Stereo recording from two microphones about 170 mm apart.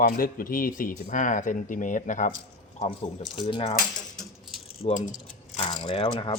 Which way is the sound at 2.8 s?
35° left (ahead or behind).